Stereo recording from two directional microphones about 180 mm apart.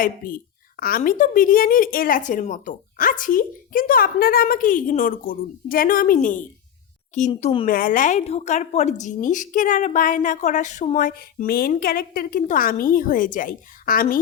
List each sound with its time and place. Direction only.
0.0 s a woman's voice: 50° left (ahead or behind)